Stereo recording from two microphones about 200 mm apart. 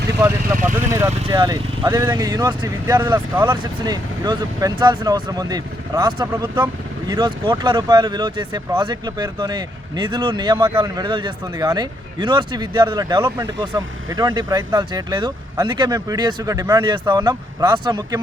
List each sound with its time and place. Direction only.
0.8 s speech: 10° right (ahead or behind)